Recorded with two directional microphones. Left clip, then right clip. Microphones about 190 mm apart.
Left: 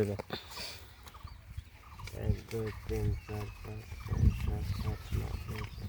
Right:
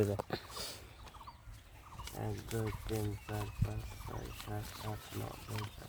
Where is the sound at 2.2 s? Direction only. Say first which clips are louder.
Left 2 dB; 10° right (ahead or behind).